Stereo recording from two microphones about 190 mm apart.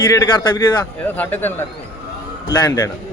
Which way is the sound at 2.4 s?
20° left (ahead or behind).